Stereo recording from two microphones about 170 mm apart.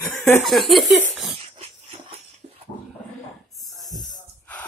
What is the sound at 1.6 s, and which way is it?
Dog, 35° right (ahead or behind).